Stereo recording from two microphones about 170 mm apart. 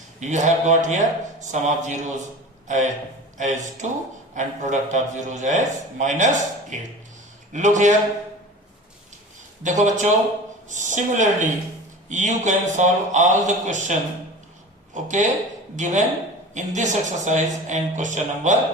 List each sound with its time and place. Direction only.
0.2 s a man's voice: 45° right (ahead or behind)
9.6 s a man's voice: 45° right (ahead or behind)
14.9 s a man's voice: 45° right (ahead or behind)